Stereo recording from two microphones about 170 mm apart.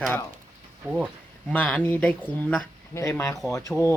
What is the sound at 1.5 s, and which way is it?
Speech, 10° left (ahead or behind).